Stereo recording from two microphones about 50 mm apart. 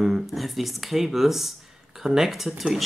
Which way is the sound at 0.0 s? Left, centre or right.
Centre.